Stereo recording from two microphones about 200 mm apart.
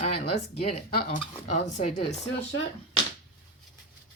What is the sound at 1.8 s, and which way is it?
Speech, 35° left (ahead or behind).